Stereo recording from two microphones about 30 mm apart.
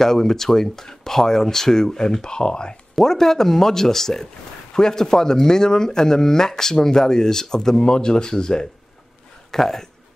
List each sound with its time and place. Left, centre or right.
0.0 s speech: centre
3.0 s speech: centre